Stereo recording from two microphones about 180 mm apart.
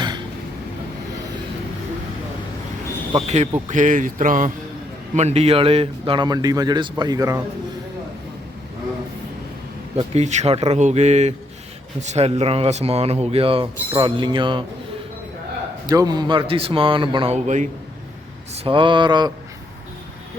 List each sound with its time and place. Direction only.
3.1 s speech: 35° right (ahead or behind); by 7.4 s 20° right (ahead or behind)
10.2 s speech: 40° right (ahead or behind)
15.9 s speech: 20° right (ahead or behind); by 17.7 s 40° right (ahead or behind)
18.5 s speech: 30° right (ahead or behind)